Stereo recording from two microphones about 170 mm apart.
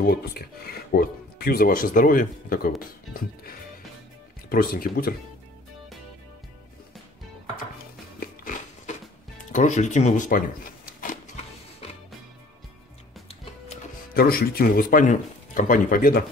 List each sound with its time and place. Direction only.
0.0 s speech: 65° left (ahead or behind)
4.5 s speech: 55° left (ahead or behind)
9.5 s speech: 45° left (ahead or behind)
11.0 s a sound: 50° left (ahead or behind)
14.1 s speech: 60° left (ahead or behind)